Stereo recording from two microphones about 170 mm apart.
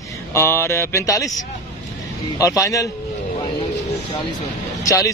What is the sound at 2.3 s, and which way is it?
Speech, 20° left (ahead or behind).